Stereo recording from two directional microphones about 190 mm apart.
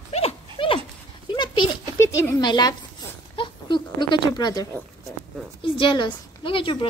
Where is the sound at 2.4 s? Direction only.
25° left (ahead or behind).